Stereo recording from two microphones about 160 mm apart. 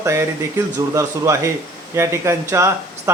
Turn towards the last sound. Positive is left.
turn(degrees=-15)  # may be behind; listen again after turning